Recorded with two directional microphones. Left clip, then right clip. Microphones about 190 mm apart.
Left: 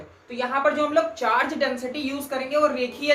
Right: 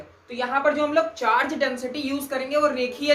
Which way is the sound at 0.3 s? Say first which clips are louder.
Even; 20° right (ahead or behind).